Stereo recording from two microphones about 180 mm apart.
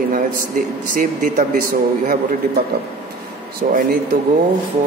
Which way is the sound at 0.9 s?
45° right (ahead or behind).